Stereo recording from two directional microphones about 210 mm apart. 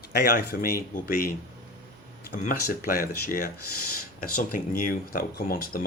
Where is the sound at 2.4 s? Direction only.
40° left (ahead or behind).